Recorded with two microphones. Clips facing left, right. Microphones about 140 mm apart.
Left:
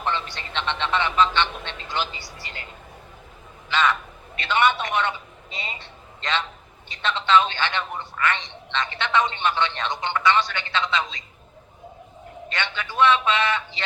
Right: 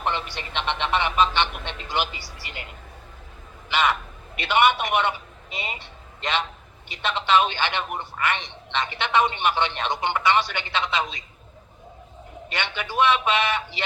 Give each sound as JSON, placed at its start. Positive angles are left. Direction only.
{"t": 0.0, "sound": "speech", "side_deg": -15}
{"t": 3.7, "sound": "a sound", "side_deg": -15}
{"t": 6.9, "sound": "a man's voice", "side_deg": -15}
{"t": 12.5, "sound": "a man's voice", "side_deg": -15}